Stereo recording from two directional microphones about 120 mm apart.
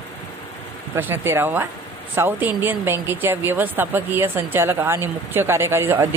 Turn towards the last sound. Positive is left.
turn(degrees=-20)  # may be behind; listen again after turning